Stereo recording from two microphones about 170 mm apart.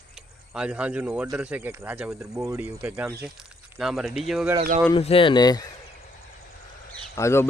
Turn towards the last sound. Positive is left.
turn(degrees=15)  # may be behind; listen again after turning